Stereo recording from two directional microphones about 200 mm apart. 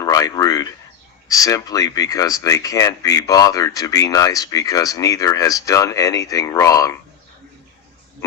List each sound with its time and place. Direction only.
0.0 s speech: 15° left (ahead or behind)